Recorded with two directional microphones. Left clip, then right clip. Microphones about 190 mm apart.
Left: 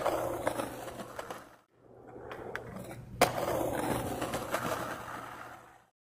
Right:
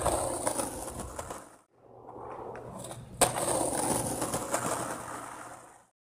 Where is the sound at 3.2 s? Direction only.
30° right (ahead or behind); by 5.7 s 55° right (ahead or behind).